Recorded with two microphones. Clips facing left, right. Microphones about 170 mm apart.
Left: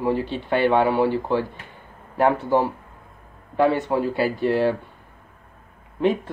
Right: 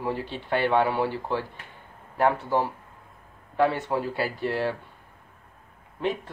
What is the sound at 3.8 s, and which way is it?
Speech, 15° left (ahead or behind).